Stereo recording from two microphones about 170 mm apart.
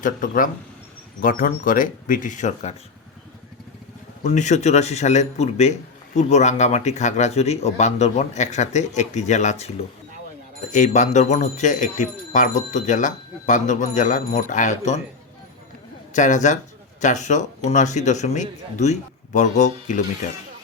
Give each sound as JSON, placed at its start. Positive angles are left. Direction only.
{"t": 0.0, "sound": "speech", "side_deg": 50}
{"t": 4.2, "sound": "speech", "side_deg": 45}
{"t": 16.1, "sound": "speech", "side_deg": 45}